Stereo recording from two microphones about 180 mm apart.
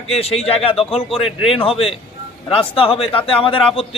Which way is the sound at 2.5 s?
30° left (ahead or behind).